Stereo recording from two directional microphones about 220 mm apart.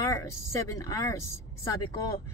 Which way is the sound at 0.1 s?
15° left (ahead or behind).